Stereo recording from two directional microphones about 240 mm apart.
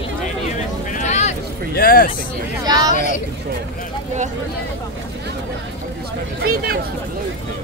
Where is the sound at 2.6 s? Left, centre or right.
Centre.